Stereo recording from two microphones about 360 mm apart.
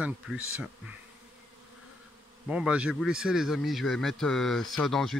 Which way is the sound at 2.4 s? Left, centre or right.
Centre.